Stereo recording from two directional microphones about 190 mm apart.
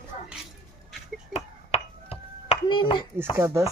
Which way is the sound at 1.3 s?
35° left (ahead or behind).